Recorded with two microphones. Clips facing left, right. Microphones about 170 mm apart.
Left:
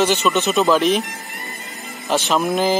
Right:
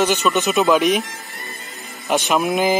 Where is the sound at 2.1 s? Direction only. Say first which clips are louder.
Even; 15° right (ahead or behind).